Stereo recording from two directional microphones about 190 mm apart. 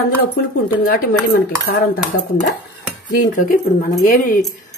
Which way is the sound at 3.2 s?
45° left (ahead or behind).